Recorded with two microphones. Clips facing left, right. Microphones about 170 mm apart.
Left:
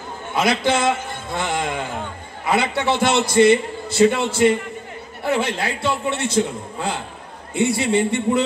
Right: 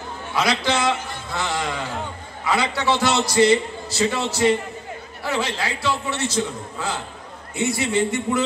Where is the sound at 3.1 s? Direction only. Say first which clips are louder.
Left 4 dB; 50° left (ahead or behind).